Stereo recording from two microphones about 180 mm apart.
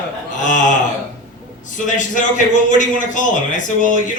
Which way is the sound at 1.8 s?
45° left (ahead or behind).